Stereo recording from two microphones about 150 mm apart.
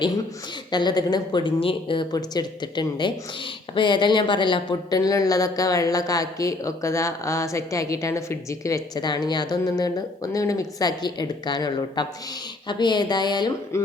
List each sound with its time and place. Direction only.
0.7 s speech: 30° left (ahead or behind)